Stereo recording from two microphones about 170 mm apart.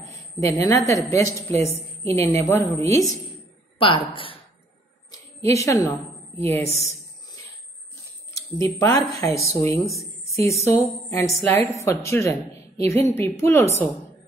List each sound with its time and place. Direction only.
0.4 s a woman's voice: 15° left (ahead or behind)
3.7 s a woman's voice: 30° left (ahead or behind)
5.1 s a sound: 15° left (ahead or behind)
6.4 s a woman's voice: 15° left (ahead or behind)
8.3 s a woman's voice: 15° left (ahead or behind)
9.8 s a sound: 20° left (ahead or behind)
11.1 s a woman's voice: 15° left (ahead or behind)